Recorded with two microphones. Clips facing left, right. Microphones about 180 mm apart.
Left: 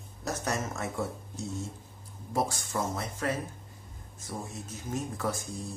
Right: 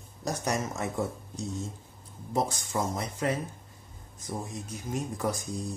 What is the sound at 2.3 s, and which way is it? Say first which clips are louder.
Speech: right 1 dB; 20° right (ahead or behind).